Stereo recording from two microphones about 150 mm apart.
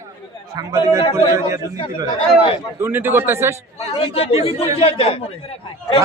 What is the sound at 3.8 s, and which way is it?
A man's voice, 40° left (ahead or behind).